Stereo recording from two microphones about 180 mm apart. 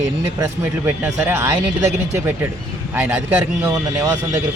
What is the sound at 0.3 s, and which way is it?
Speech, 20° right (ahead or behind).